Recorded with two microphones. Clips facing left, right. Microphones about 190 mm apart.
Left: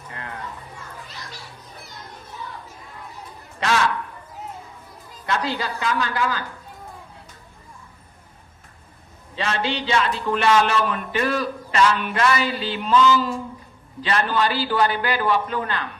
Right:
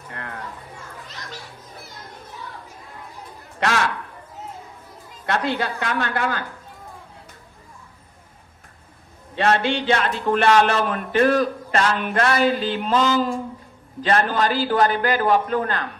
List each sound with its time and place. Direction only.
0.1 s a sound: 60° right (ahead or behind)
5.2 s a woman's voice: 55° right (ahead or behind)
9.3 s a man's voice: 55° right (ahead or behind)